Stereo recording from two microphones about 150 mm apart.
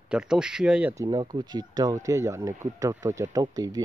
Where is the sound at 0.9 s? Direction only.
25° right (ahead or behind).